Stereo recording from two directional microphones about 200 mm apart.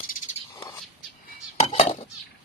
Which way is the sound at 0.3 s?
20° left (ahead or behind).